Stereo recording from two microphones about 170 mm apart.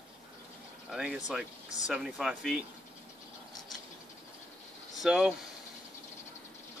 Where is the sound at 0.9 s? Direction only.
Centre (ahead or behind).